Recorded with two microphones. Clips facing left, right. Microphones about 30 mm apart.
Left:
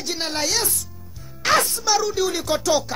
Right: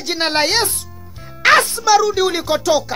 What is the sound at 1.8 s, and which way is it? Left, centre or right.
Speech, centre.